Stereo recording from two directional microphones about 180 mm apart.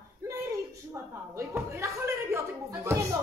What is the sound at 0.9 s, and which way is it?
A woman's voice, 15° right (ahead or behind).